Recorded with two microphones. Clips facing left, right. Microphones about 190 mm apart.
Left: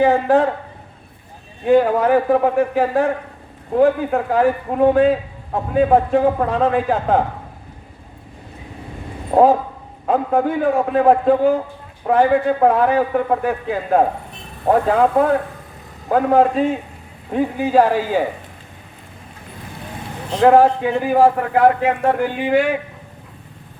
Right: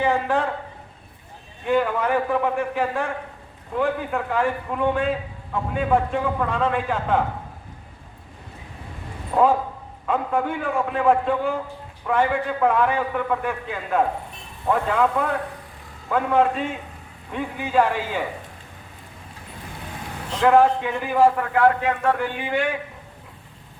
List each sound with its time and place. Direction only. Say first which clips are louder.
0.0 s a man's voice: left 7 dB; 40° left (ahead or behind)
1.6 s a man's voice: left 7 dB; 45° left (ahead or behind)
9.3 s a man's voice: left 6 dB; 40° left (ahead or behind)
20.4 s a man's voice: left 5 dB; 40° left (ahead or behind)